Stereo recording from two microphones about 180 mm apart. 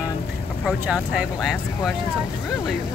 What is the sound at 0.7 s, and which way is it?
Speech, 5° right (ahead or behind).